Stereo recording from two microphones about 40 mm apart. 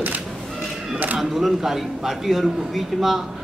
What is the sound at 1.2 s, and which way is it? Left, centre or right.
A man's voice, centre.